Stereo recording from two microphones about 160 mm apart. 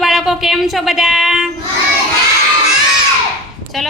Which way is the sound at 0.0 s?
Centre (ahead or behind).